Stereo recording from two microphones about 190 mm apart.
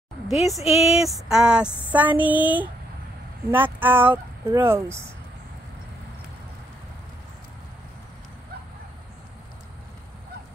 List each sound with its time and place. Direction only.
0.3 s a woman's voice: centre (ahead or behind)